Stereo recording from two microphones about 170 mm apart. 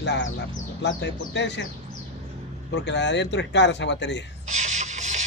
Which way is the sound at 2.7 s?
90° left.